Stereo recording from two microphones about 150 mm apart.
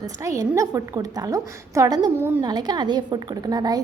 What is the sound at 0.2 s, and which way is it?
A woman's voice, 20° right (ahead or behind).